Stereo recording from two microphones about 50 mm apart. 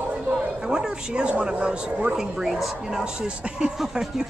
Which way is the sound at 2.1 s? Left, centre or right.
Centre.